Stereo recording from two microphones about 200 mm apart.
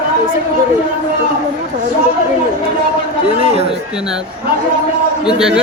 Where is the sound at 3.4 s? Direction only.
30° right (ahead or behind).